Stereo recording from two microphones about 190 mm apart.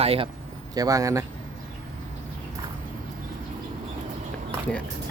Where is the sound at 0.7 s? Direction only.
20° right (ahead or behind).